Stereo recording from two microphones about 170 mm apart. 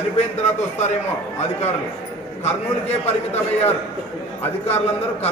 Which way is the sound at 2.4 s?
40° left (ahead or behind).